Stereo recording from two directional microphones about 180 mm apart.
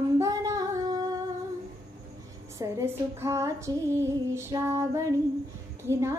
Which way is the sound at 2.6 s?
15° right (ahead or behind).